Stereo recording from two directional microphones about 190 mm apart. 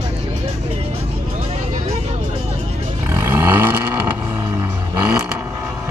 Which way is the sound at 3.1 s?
10° right (ahead or behind).